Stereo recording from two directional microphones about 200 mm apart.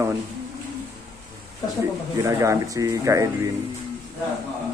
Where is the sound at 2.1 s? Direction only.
15° right (ahead or behind).